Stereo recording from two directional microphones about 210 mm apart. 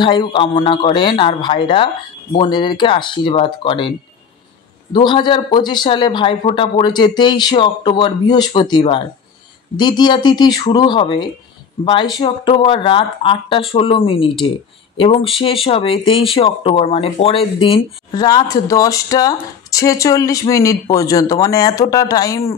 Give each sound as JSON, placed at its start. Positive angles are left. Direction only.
{"t": 0.0, "sound": "speech", "side_deg": 25}
{"t": 4.9, "sound": "speech", "side_deg": 20}